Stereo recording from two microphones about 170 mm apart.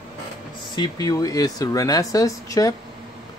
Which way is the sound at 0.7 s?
25° left (ahead or behind).